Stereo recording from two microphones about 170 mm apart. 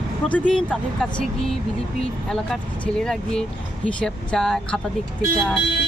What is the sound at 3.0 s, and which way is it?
Speech, 5° left (ahead or behind).